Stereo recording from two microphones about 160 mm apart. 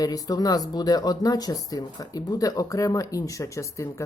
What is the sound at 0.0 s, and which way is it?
Speech, 25° left (ahead or behind).